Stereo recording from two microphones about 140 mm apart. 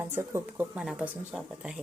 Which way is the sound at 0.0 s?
15° right (ahead or behind).